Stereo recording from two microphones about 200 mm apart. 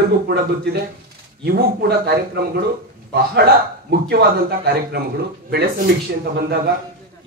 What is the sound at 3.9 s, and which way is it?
A man's voice, 55° right (ahead or behind).